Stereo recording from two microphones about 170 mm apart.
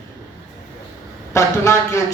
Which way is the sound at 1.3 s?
15° left (ahead or behind).